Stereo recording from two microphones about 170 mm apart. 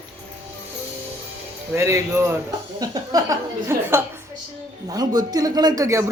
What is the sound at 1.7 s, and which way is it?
A woman's voice, 15° right (ahead or behind).